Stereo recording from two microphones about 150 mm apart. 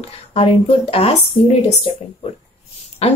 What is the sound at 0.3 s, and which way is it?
Speech, 40° left (ahead or behind).